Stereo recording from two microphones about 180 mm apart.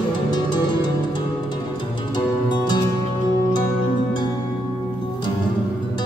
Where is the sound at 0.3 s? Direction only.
25° left (ahead or behind).